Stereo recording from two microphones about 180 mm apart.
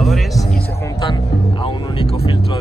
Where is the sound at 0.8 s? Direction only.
20° left (ahead or behind).